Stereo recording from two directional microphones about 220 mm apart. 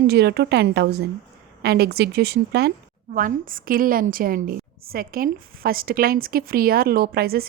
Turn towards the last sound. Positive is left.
turn(degrees=-45)  # may be behind; listen again after turning